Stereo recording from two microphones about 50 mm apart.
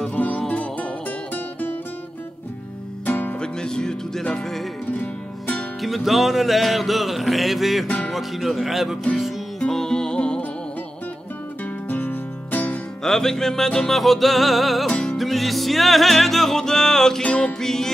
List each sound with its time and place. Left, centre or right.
0.1 s music: left
3.1 s music: left
3.3 s music: centre
5.8 s music: centre
9.6 s music: centre
11.9 s music: left
13.0 s music: centre
17.2 s music: left